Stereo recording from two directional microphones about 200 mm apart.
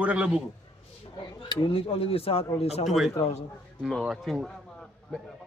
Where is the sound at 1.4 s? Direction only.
25° left (ahead or behind).